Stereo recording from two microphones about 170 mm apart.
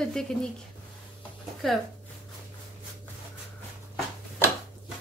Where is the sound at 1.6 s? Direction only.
Centre (ahead or behind).